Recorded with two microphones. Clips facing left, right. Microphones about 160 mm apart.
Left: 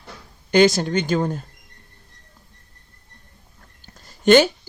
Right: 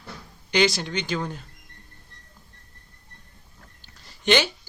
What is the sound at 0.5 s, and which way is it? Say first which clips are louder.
Speech: left 7 dB; 45° left (ahead or behind).